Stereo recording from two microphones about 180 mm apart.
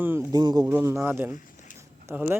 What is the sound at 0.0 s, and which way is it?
Speech, 15° right (ahead or behind).